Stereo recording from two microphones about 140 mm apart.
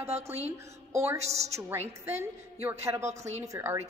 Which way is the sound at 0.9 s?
20° right (ahead or behind).